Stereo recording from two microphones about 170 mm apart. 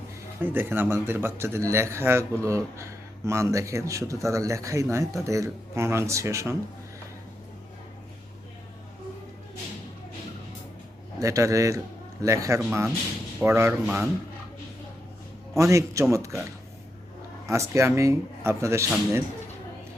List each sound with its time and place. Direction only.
0.4 s a man's voice: 15° right (ahead or behind)
11.2 s a man's voice: 20° right (ahead or behind)
15.5 s a man's voice: 15° right (ahead or behind)
16.1 s a sound: 15° right (ahead or behind)
17.5 s a man's voice: 15° right (ahead or behind)